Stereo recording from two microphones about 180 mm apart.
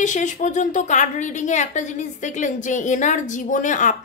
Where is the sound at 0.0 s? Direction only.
45° left (ahead or behind).